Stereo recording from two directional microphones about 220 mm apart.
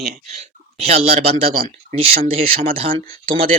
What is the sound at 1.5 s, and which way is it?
Speech, 40° right (ahead or behind).